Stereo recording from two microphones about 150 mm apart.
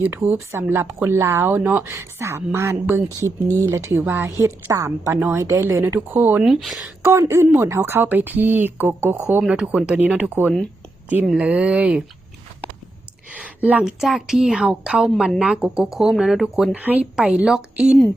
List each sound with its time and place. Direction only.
0.0 s speech: 15° right (ahead or behind)
7.0 s speech: 15° right (ahead or behind)
13.3 s a woman's voice: 10° right (ahead or behind)